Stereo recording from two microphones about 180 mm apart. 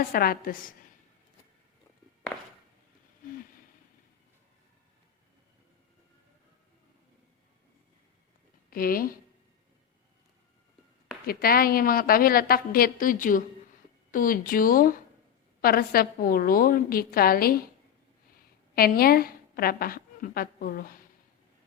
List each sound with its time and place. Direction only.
0.1 s a woman's voice: 55° left (ahead or behind)
8.7 s speech: 55° left (ahead or behind)
11.3 s a woman's voice: 55° left (ahead or behind)
18.7 s a woman's voice: 55° left (ahead or behind)